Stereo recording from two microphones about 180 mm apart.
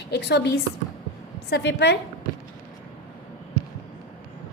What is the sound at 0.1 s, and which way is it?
A woman's voice, 70° left (ahead or behind).